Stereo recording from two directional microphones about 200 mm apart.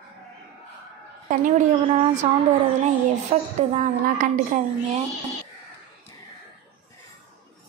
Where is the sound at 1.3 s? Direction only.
40° right (ahead or behind).